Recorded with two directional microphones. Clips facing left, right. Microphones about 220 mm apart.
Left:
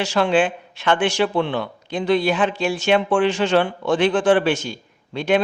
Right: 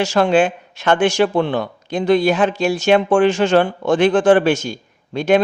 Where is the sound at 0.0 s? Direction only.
45° right (ahead or behind).